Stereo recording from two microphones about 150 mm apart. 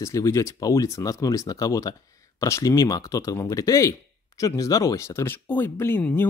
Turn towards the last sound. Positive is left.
turn(degrees=15)  # may be behind; listen again after turning